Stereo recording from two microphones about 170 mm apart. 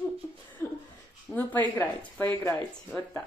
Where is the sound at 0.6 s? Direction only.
15° left (ahead or behind).